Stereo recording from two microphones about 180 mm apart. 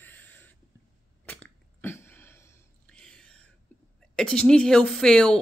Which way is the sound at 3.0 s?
5° left (ahead or behind).